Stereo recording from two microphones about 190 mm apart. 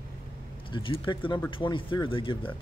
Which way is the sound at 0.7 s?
25° left (ahead or behind).